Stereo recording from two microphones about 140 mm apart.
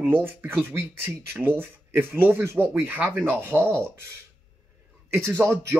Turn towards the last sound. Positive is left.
turn(degrees=-15)  # may be behind; listen again after turning